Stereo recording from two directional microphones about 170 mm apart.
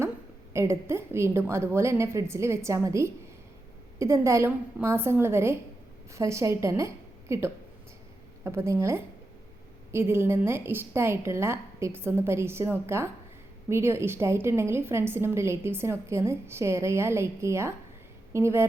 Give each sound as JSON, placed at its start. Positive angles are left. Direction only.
{"t": 0.5, "sound": "a woman's voice", "side_deg": -15}